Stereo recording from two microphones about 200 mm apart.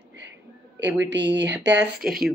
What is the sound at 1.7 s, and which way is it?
Speech, 5° right (ahead or behind).